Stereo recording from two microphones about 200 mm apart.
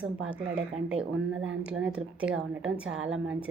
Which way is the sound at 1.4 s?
75° right (ahead or behind).